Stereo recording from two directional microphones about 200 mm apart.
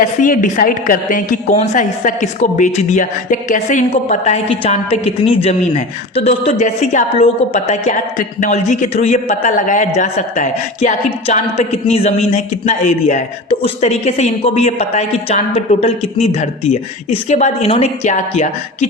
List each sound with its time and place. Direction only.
0.0 s a woman's voice: 40° left (ahead or behind)